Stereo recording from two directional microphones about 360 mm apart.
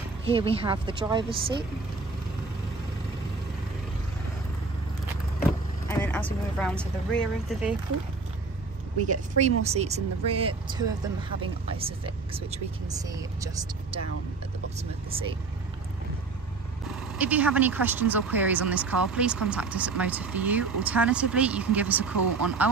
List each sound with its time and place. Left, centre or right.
0.3 s a woman's voice: centre
5.9 s speech: centre
9.0 s a woman's voice: centre
14.8 s a woman's voice: centre
17.2 s a woman's voice: centre